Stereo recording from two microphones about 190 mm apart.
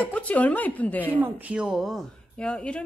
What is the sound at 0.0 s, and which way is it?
Speech, 10° left (ahead or behind).